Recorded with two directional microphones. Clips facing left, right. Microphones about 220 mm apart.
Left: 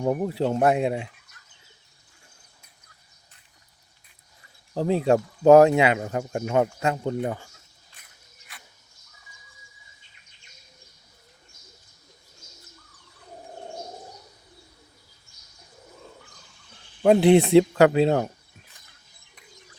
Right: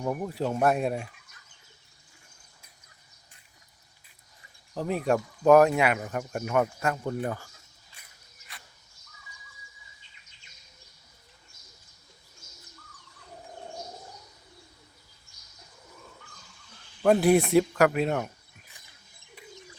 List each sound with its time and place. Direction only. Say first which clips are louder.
0.0 s speech: left 6 dB; 30° left (ahead or behind)
4.7 s speech: left 5 dB; 30° left (ahead or behind)
17.0 s speech: left 4 dB; 20° left (ahead or behind)